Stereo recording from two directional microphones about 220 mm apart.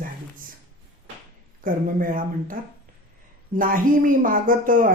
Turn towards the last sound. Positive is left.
turn(degrees=-40)  # may be behind; listen again after turning